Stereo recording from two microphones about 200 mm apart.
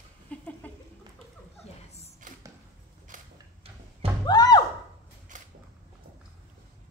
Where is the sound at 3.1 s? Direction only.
40° right (ahead or behind).